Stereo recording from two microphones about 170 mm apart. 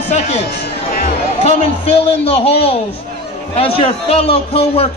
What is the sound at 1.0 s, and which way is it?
Chatter, 40° left (ahead or behind).